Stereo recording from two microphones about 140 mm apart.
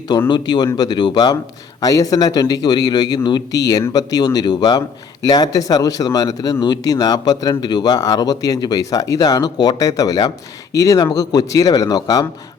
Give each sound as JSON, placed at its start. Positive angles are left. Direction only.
{"t": 0.3, "sound": "a man's voice", "side_deg": 30}